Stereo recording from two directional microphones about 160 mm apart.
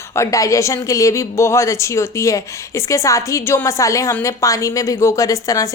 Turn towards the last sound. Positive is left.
turn(degrees=20)  # may be behind; listen again after turning